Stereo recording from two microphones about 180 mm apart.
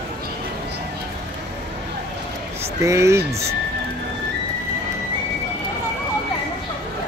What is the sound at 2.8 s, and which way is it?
Speech, 15° right (ahead or behind).